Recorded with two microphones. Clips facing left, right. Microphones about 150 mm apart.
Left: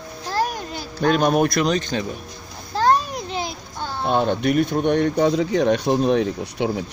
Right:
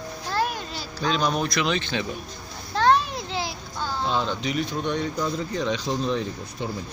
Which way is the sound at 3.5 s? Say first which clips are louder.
Left 1 dB; 55° left (ahead or behind).